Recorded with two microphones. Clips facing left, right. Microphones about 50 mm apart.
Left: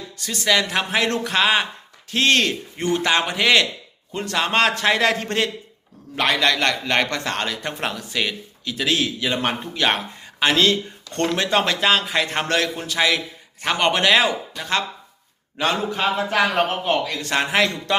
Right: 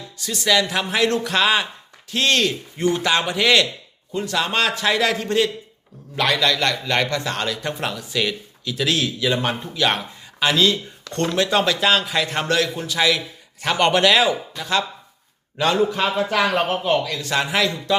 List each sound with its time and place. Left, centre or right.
0.2 s a woman's voice: left
4.1 s a man's voice: left
7.4 s speech: left
9.4 s a man's voice: left
13.7 s speech: centre
14.6 s a man's voice: left
15.5 s speech: left
16.4 s a man's voice: left